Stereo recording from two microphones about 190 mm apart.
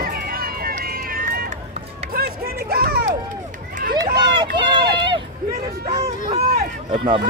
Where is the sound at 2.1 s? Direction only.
55° right (ahead or behind).